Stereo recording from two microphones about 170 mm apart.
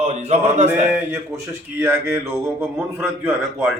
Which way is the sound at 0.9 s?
10° right (ahead or behind).